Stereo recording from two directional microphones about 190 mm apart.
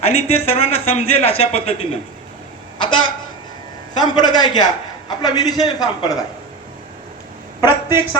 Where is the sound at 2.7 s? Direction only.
25° left (ahead or behind).